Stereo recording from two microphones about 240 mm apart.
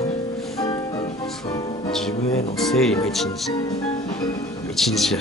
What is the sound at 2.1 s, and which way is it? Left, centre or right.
Speech, left.